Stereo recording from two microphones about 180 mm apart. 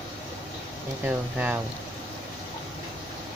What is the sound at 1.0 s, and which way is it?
Speech, 5° right (ahead or behind).